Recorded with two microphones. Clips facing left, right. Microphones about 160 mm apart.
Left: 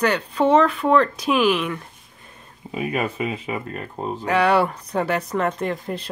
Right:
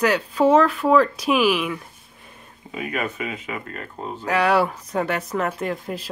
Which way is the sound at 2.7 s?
30° left (ahead or behind).